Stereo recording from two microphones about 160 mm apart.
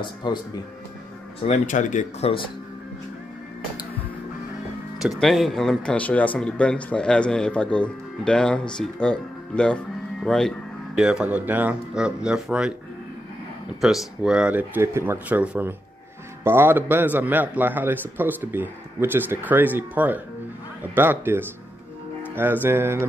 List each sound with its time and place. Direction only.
0.0 s speech: 25° left (ahead or behind)
1.5 s speech: 50° left (ahead or behind)
4.9 s speech: centre (ahead or behind)
13.7 s speech: centre (ahead or behind)